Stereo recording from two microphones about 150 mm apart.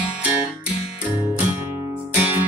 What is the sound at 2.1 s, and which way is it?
Music, 15° right (ahead or behind).